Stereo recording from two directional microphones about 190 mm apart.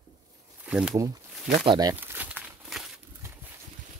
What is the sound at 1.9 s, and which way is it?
Crumpling, 10° right (ahead or behind).